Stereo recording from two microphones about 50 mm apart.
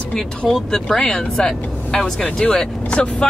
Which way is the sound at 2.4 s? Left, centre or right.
Centre.